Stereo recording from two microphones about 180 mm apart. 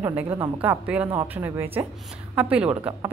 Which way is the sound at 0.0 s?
10° right (ahead or behind).